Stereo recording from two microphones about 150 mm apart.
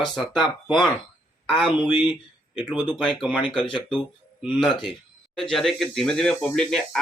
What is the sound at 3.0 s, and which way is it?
Speech, 5° left (ahead or behind).